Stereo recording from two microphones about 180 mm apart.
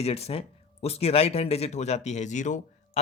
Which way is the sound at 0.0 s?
35° left (ahead or behind).